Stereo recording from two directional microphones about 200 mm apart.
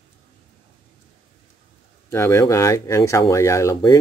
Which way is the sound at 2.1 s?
15° left (ahead or behind).